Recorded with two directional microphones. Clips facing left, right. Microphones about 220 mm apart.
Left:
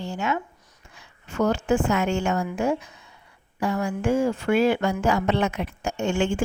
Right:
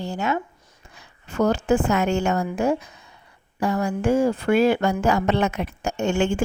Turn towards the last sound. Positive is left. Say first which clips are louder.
# right 2 dB
turn(degrees=-40)  # may be behind; listen again after turning